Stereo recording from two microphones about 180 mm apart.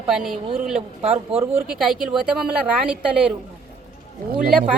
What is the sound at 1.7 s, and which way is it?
A woman's voice, 5° right (ahead or behind).